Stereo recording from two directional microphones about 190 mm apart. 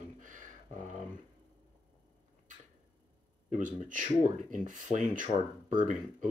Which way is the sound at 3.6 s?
45° right (ahead or behind).